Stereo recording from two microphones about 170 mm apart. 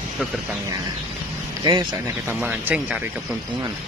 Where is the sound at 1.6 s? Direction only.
25° right (ahead or behind).